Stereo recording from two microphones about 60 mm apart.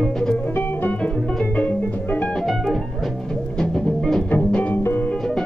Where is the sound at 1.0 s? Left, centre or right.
Centre.